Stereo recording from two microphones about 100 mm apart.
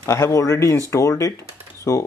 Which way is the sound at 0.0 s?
30° left (ahead or behind).